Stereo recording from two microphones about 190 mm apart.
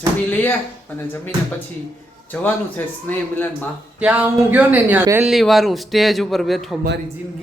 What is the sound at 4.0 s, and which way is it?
Speech, 5° right (ahead or behind).